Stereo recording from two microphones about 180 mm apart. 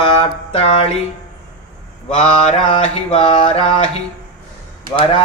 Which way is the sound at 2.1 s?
30° left (ahead or behind).